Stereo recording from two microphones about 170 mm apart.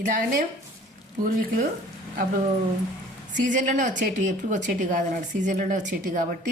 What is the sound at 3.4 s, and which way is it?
A woman's voice, 50° right (ahead or behind).